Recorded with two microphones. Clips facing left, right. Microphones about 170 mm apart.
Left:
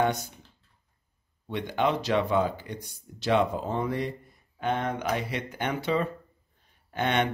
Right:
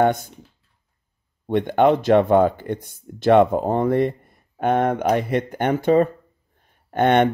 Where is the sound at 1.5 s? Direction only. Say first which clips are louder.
Right 10 dB; 55° right (ahead or behind).